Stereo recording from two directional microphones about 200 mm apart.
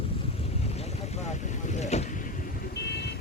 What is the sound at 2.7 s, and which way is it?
Vehicle, 55° left (ahead or behind).